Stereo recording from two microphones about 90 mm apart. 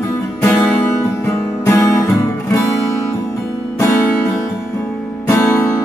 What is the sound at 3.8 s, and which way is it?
Music, 35° left (ahead or behind).